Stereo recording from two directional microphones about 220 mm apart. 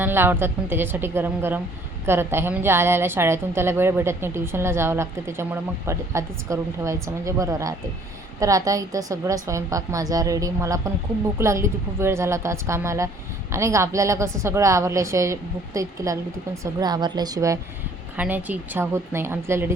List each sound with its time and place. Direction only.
0.0 s a woman's voice: 10° right (ahead or behind)